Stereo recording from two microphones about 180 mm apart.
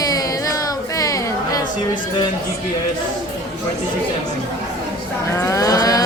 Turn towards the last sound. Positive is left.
turn(degrees=20)  # may be behind; listen again after turning